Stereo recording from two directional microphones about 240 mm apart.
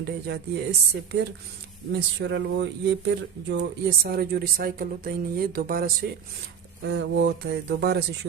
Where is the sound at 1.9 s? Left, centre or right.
Right.